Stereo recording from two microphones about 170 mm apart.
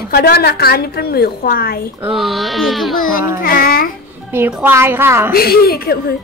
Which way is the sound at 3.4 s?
60° left (ahead or behind).